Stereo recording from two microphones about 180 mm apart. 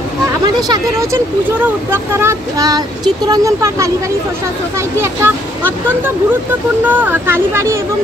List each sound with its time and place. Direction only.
0.6 s speech: 20° right (ahead or behind)
5.0 s speech: 10° right (ahead or behind)